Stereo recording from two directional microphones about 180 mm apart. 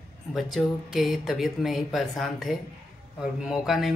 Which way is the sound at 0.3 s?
Centre (ahead or behind).